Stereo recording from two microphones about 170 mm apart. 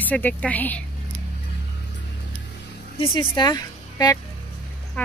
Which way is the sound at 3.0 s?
25° left (ahead or behind).